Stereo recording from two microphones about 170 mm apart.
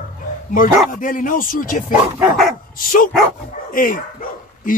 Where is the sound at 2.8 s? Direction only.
55° left (ahead or behind).